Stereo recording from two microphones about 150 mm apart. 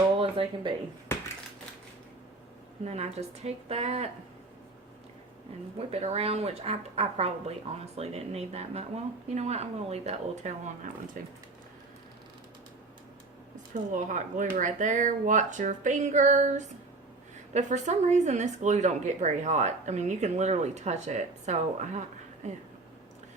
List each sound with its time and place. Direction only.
0.2 s speech: 35° right (ahead or behind)
1.1 s a sound: 15° left (ahead or behind)
2.8 s speech: 45° right (ahead or behind)
5.7 s speech: 45° right (ahead or behind)
13.9 s speech: 55° right (ahead or behind)